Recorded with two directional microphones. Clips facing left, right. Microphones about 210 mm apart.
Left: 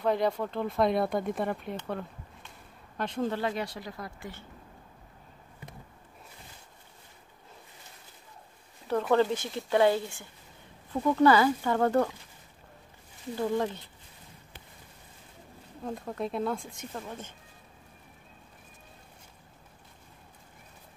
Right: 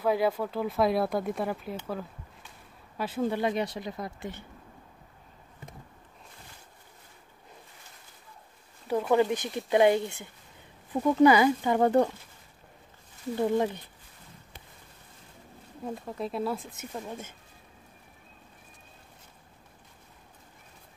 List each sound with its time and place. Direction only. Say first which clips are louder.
0.0 s speech: right 1 dB; 5° right (ahead or behind)
9.1 s speech: right 1 dB; 15° right (ahead or behind)
13.4 s speech: right 3 dB; 20° right (ahead or behind)
15.8 s speech: even; centre (ahead or behind)